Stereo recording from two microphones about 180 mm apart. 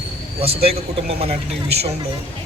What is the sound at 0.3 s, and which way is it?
A man's voice, 35° right (ahead or behind).